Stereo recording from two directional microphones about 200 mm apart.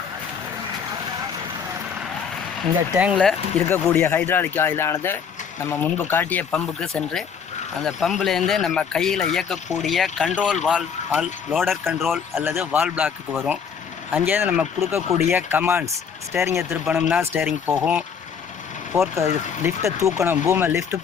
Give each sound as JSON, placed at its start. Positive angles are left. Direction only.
{"t": 2.9, "sound": "speech", "side_deg": -5}
{"t": 12.3, "sound": "speech", "side_deg": -10}
{"t": 19.1, "sound": "speech", "side_deg": -15}